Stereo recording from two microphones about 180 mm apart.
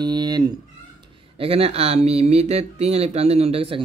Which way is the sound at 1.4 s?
35° right (ahead or behind).